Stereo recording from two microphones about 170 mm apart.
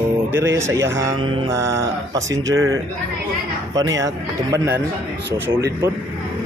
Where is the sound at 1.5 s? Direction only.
20° right (ahead or behind).